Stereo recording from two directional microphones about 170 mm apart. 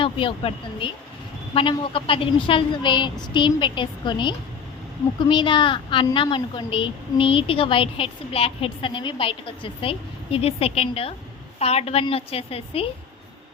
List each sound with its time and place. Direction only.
0.0 s a woman's voice: 30° left (ahead or behind)